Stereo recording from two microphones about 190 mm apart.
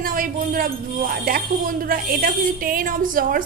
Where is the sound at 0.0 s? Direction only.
45° right (ahead or behind).